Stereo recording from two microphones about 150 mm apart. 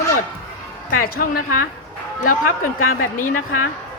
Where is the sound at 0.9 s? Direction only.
70° left (ahead or behind).